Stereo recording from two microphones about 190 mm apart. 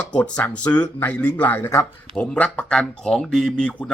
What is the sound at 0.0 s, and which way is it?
Speech, 5° left (ahead or behind).